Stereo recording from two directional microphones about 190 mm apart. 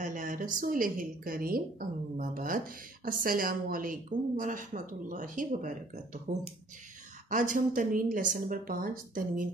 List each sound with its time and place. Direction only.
0.0 s a woman's voice: 45° right (ahead or behind)
7.2 s a woman's voice: 45° right (ahead or behind)